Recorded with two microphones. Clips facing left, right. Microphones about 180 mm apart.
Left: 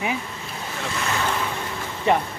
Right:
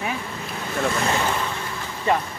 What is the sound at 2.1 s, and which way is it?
Speech, 20° left (ahead or behind).